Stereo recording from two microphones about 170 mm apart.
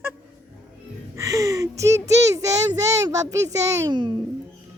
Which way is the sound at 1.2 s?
20° right (ahead or behind).